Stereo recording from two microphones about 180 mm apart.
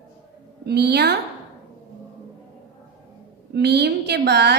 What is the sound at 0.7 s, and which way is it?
Speech, 65° right (ahead or behind).